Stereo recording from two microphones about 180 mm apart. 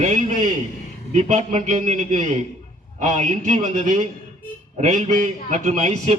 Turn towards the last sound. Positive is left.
turn(degrees=-40)  # may be behind; listen again after turning